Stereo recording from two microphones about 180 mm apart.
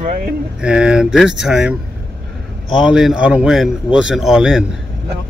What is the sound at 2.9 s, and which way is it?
Speech, 5° right (ahead or behind).